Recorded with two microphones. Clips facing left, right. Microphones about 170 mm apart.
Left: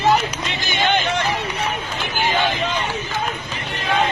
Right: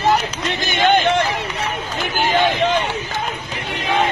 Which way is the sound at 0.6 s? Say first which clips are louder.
Right 5 dB; 50° right (ahead or behind).